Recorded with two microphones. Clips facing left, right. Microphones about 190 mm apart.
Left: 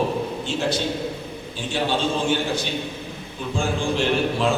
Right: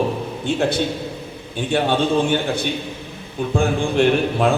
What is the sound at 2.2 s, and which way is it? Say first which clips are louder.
A man's voice: right 3 dB; 60° right (ahead or behind).